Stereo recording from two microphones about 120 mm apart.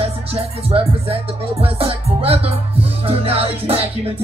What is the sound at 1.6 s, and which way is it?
Speech, 50° right (ahead or behind).